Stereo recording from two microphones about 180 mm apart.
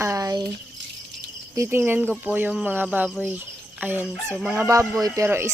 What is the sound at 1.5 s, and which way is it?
Speech, 15° right (ahead or behind).